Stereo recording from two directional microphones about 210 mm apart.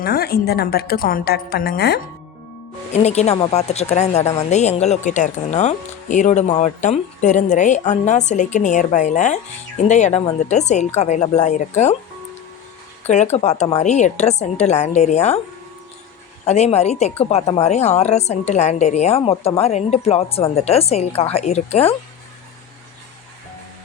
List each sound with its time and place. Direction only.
0.0 s a woman's voice: 45° left (ahead or behind)
2.9 s speech: 30° left (ahead or behind)
13.1 s speech: 30° left (ahead or behind)
16.5 s speech: 30° left (ahead or behind)